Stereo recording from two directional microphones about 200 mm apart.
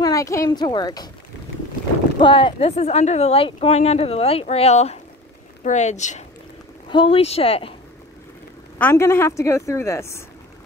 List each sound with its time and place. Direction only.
0.0 s speech: 15° left (ahead or behind)
2.1 s speech: 25° left (ahead or behind)
8.7 s speech: 10° left (ahead or behind)